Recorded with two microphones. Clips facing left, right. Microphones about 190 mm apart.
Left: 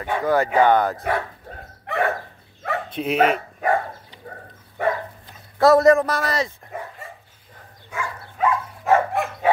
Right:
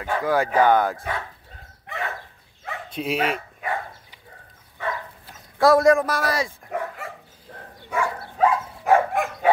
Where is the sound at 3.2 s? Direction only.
45° left (ahead or behind).